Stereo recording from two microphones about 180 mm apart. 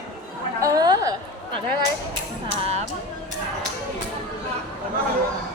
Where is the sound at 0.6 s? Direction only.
20° right (ahead or behind).